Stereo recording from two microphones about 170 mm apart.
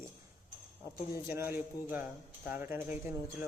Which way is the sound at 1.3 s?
15° right (ahead or behind).